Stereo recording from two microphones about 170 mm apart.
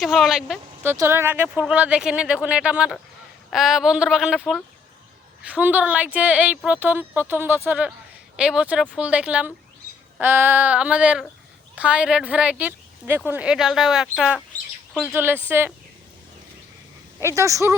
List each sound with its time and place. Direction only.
0.0 s speech: centre (ahead or behind)
0.8 s speech: 15° right (ahead or behind)
17.2 s speech: 15° right (ahead or behind)